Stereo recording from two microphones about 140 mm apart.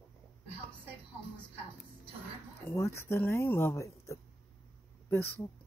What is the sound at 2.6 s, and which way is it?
Speech, 20° left (ahead or behind).